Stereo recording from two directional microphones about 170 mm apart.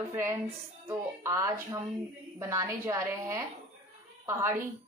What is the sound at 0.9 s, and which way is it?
A woman's voice, 15° right (ahead or behind).